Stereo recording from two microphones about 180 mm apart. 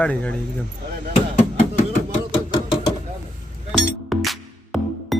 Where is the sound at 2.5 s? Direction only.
25° left (ahead or behind).